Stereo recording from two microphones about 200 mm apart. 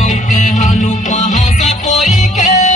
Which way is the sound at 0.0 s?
35° left (ahead or behind).